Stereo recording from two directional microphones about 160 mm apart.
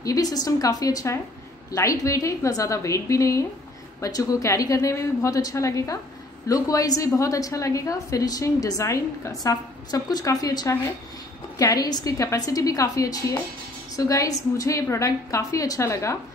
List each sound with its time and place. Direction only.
0.0 s a woman's voice: 20° left (ahead or behind)